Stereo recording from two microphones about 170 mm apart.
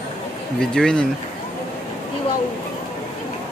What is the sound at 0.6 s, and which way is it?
Speech, 5° left (ahead or behind).